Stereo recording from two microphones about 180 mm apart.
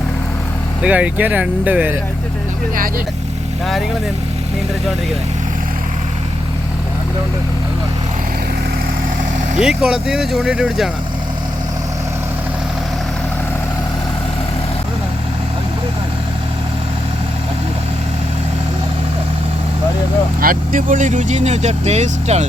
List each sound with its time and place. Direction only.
0.8 s speech: 5° right (ahead or behind)
9.6 s speech: 5° right (ahead or behind)
20.4 s speech: 50° right (ahead or behind)